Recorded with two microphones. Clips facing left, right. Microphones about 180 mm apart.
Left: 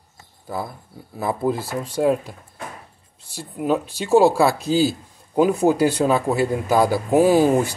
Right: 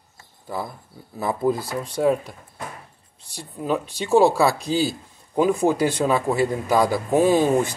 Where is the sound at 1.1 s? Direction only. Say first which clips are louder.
Even; 5° left (ahead or behind).